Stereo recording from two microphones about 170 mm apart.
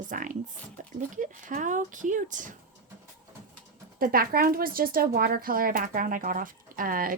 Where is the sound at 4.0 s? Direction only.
60° right (ahead or behind).